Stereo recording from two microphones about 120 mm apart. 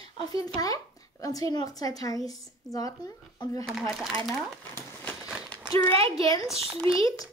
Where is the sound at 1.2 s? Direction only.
30° left (ahead or behind).